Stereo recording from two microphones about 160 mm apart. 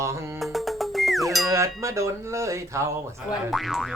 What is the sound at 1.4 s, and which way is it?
Speech, 20° right (ahead or behind).